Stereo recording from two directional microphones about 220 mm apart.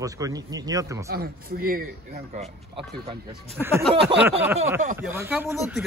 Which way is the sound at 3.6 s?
10° right (ahead or behind).